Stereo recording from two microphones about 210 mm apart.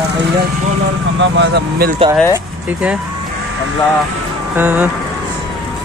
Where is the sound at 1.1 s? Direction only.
55° right (ahead or behind).